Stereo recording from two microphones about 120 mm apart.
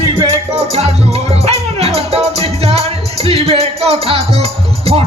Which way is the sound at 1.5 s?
60° right (ahead or behind).